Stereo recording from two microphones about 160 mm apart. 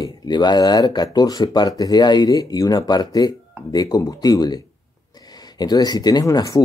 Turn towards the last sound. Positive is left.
turn(degrees=20)  # may be behind; listen again after turning